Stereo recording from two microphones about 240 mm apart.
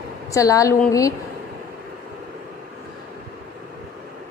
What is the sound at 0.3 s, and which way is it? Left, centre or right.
Speech, centre.